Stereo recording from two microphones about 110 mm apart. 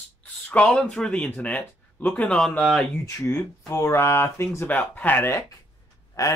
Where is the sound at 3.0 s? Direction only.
25° left (ahead or behind).